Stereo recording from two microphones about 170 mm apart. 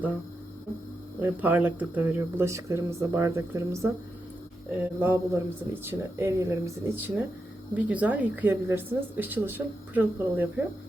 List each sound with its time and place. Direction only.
1.2 s a woman's voice: 10° right (ahead or behind)